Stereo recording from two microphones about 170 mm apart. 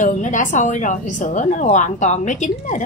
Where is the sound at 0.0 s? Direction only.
50° left (ahead or behind).